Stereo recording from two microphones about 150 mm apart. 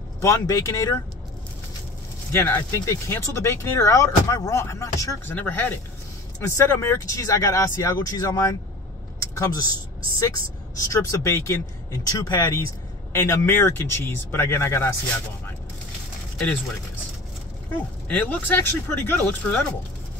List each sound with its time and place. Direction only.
0.2 s speech: 20° left (ahead or behind)
2.3 s speech: 15° left (ahead or behind)
18.0 s speech: 10° left (ahead or behind)